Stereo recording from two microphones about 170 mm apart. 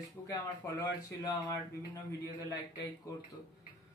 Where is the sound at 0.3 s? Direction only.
25° left (ahead or behind).